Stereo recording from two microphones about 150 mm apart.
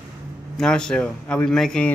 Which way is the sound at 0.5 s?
5° left (ahead or behind).